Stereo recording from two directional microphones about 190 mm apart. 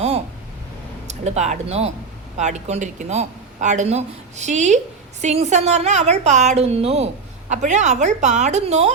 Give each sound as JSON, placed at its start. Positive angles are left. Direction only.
{"t": 1.0, "sound": "speech", "side_deg": -35}